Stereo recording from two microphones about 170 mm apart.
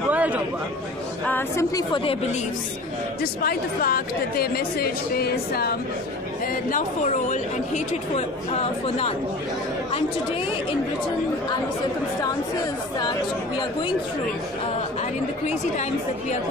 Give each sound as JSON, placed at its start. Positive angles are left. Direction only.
{"t": 0.1, "sound": "a sound", "side_deg": -10}
{"t": 1.2, "sound": "speech", "side_deg": 10}
{"t": 1.8, "sound": "speech", "side_deg": 30}
{"t": 3.2, "sound": "a woman's voice", "side_deg": 60}
{"t": 6.4, "sound": "speech", "side_deg": 55}
{"t": 15.4, "sound": "speech", "side_deg": 45}